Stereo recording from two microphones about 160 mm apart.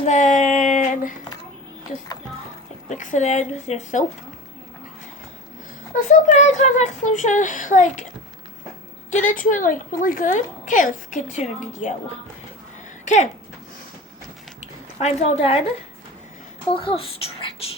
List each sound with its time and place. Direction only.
0.0 s a sound: 50° left (ahead or behind)
2.9 s a woman's voice: 50° left (ahead or behind)
5.9 s a woman's voice: 55° left (ahead or behind)
9.1 s a woman's voice: 55° left (ahead or behind)
14.9 s a child's voice: 40° left (ahead or behind)
16.7 s a child's voice: 35° left (ahead or behind)